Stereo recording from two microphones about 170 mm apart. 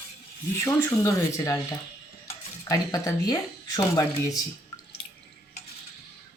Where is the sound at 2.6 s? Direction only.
20° left (ahead or behind).